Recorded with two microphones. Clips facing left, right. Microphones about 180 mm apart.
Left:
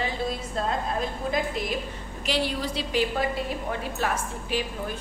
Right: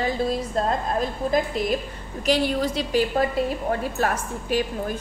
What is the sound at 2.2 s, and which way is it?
Speech, 45° right (ahead or behind).